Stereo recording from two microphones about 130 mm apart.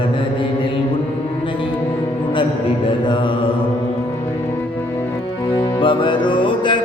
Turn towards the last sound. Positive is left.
turn(degrees=40)  # may be behind; listen again after turning